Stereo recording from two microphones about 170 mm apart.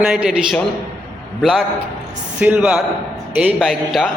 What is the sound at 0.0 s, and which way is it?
A man's voice, 5° right (ahead or behind).